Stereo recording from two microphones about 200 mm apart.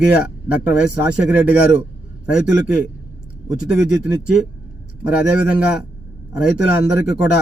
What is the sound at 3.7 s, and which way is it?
A man's voice, 5° right (ahead or behind).